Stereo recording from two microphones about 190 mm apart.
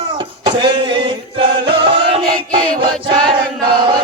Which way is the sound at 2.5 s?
25° right (ahead or behind).